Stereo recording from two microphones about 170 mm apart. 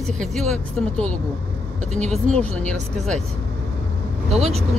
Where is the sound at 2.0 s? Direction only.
45° right (ahead or behind).